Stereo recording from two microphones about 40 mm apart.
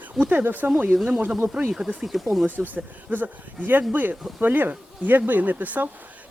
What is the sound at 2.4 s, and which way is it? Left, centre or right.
Speech, right.